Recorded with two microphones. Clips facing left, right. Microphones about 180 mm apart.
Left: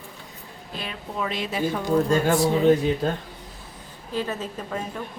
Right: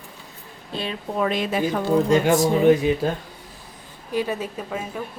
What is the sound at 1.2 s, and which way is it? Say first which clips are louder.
Speech: right 5 dB; 50° right (ahead or behind).